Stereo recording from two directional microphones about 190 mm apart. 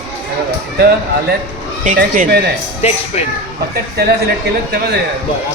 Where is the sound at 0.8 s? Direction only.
55° right (ahead or behind).